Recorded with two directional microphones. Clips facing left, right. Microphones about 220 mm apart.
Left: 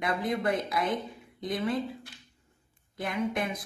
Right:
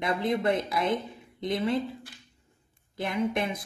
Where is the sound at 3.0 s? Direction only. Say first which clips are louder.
Right 2 dB; 25° right (ahead or behind).